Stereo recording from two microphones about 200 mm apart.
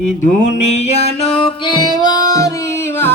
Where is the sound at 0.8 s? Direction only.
30° left (ahead or behind).